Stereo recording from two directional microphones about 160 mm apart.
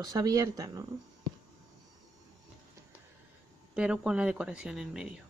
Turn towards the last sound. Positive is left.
turn(degrees=-5)  # may be behind; listen again after turning